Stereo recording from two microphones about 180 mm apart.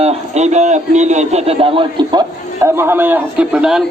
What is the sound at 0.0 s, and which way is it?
A man's voice, 35° right (ahead or behind).